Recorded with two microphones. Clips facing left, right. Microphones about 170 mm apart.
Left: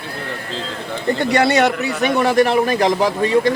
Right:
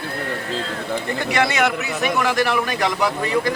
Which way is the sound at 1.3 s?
35° left (ahead or behind).